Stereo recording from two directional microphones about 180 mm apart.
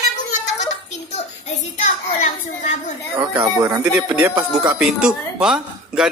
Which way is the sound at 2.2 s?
40° left (ahead or behind).